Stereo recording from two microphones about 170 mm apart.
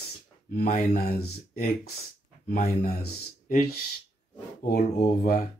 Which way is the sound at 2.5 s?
40° left (ahead or behind).